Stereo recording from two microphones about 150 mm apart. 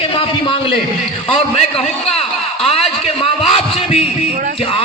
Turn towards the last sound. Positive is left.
turn(degrees=40)  # may be behind; listen again after turning